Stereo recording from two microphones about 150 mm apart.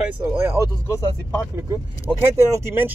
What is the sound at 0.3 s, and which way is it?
Speech, 15° right (ahead or behind).